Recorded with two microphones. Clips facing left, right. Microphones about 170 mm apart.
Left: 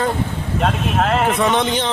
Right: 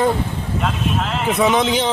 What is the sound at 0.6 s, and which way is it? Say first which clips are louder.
Speech: left 4 dB; 55° left (ahead or behind).